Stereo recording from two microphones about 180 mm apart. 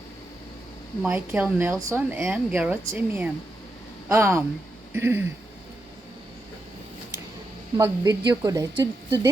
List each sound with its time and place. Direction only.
1.0 s speech: 10° right (ahead or behind)
7.8 s a woman's voice: 20° right (ahead or behind)